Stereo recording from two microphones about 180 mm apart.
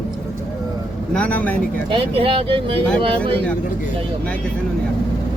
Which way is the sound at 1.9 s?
30° right (ahead or behind).